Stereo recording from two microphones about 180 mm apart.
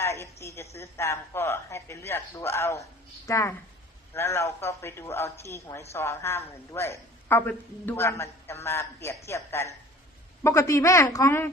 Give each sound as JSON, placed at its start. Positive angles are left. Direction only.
{"t": 0.0, "sound": "a woman's voice", "side_deg": 15}